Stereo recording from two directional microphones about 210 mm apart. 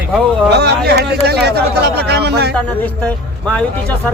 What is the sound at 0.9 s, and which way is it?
Speech, 50° right (ahead or behind).